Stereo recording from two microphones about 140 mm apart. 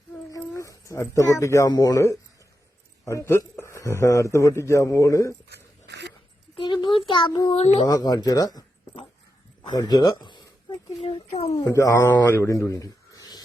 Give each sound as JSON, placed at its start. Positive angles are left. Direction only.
{"t": 0.3, "sound": "a man's voice", "side_deg": 25}
{"t": 6.8, "sound": "a child's voice", "side_deg": 40}
{"t": 7.5, "sound": "speech", "side_deg": 45}
{"t": 7.9, "sound": "a man's voice", "side_deg": 30}
{"t": 9.7, "sound": "a man's voice", "side_deg": 30}
{"t": 11.0, "sound": "speech", "side_deg": 45}
{"t": 11.5, "sound": "a man's voice", "side_deg": 20}
{"t": 12.6, "sound": "a sound", "side_deg": 25}